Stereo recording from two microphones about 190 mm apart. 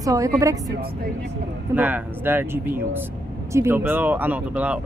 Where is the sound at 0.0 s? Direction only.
15° right (ahead or behind).